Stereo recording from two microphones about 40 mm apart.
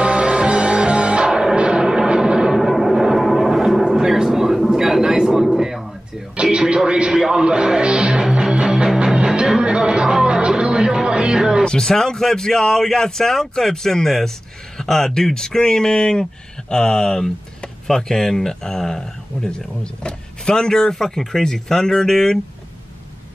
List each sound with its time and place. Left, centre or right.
0.0 s music: right
2.7 s gong: centre
4.6 s a sound: centre
5.0 s speech: centre
6.4 s a sound: centre
6.9 s speech: right
8.7 s music: right
11.8 s speech: centre